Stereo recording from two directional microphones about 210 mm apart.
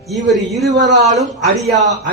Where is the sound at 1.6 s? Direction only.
Centre (ahead or behind).